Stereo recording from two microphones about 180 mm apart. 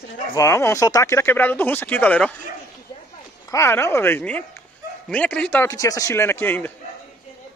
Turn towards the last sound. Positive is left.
turn(degrees=10)  # may be behind; listen again after turning